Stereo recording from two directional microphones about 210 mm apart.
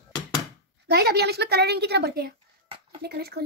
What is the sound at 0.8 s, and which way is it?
A woman's voice, 50° right (ahead or behind).